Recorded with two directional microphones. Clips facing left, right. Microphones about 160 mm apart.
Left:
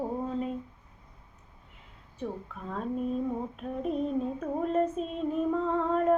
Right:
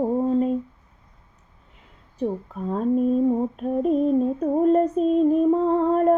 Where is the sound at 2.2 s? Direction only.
40° right (ahead or behind).